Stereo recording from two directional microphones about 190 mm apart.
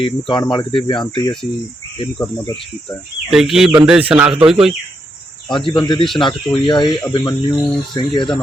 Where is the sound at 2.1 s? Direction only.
5° left (ahead or behind).